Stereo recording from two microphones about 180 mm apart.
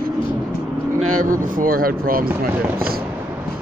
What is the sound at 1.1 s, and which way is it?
Speech, 45° right (ahead or behind).